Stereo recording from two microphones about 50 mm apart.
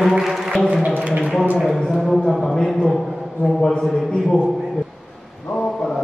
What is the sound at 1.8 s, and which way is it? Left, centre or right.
A man's voice, centre.